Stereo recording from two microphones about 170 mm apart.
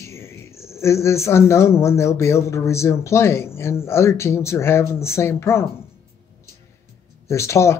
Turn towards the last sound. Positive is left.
turn(degrees=15)  # may be behind; listen again after turning